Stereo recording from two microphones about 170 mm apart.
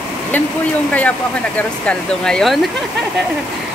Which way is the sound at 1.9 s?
5° left (ahead or behind).